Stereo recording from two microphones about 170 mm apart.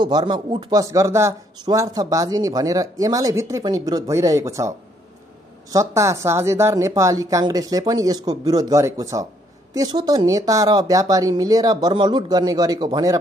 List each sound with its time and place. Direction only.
0.0 s a man's voice: 25° right (ahead or behind)